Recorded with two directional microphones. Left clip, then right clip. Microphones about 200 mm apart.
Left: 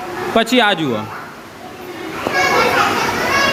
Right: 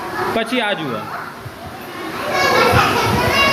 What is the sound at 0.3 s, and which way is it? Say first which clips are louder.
Speech: left 8 dB; 45° left (ahead or behind).